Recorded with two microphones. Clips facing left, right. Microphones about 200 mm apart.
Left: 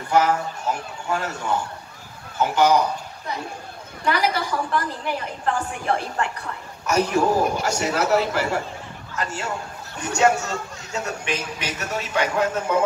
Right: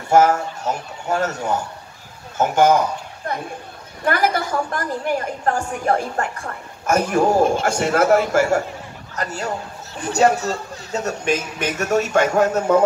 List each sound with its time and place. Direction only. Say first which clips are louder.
0.1 s a woman's voice: right 5 dB; 45° right (ahead or behind)